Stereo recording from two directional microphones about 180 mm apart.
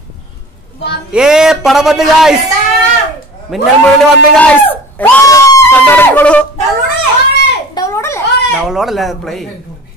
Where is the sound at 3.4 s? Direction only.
Centre (ahead or behind).